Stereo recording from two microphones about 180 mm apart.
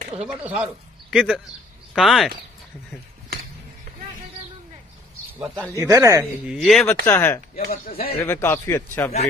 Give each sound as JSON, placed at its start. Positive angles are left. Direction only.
{"t": 0.1, "sound": "speech", "side_deg": -5}
{"t": 5.8, "sound": "speech", "side_deg": -15}
{"t": 6.4, "sound": "speech", "side_deg": 0}
{"t": 7.1, "sound": "a man's voice", "side_deg": 15}
{"t": 7.7, "sound": "speech", "side_deg": 55}
{"t": 8.2, "sound": "a man's voice", "side_deg": 15}